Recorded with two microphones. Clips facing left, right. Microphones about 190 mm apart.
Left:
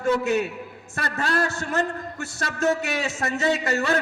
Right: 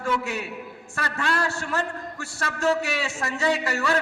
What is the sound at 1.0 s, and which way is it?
Speech, 40° left (ahead or behind).